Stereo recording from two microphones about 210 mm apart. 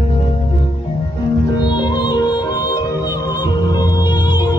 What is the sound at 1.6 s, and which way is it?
Music, 20° left (ahead or behind).